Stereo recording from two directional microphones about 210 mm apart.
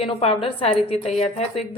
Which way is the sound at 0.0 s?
25° left (ahead or behind).